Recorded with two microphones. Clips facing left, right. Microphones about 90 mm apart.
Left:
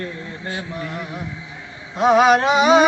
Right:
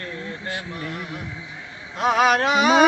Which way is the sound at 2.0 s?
Centre (ahead or behind).